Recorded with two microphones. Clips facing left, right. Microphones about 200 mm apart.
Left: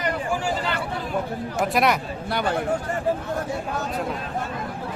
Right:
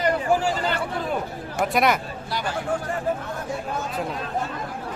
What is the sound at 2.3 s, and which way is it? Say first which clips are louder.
Speech: left 4 dB; 60° left (ahead or behind).